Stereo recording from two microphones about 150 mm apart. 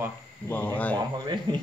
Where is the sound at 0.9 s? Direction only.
30° right (ahead or behind).